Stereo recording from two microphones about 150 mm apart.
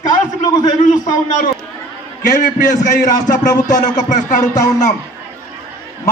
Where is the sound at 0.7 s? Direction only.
55° left (ahead or behind).